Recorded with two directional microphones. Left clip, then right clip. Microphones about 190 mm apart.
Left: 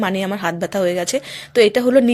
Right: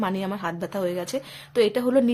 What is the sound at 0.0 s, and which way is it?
A woman's voice, 20° left (ahead or behind).